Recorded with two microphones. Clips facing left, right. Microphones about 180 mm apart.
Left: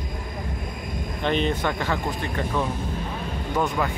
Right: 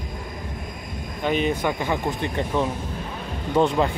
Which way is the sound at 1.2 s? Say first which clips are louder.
Right 1 dB; 10° right (ahead or behind).